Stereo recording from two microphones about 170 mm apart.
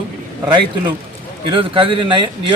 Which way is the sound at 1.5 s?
30° right (ahead or behind).